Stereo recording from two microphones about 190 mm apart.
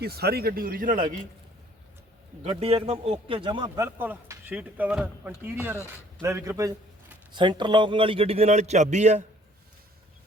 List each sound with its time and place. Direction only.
0.0 s speech: 55° right (ahead or behind)
2.4 s a man's voice: 30° right (ahead or behind)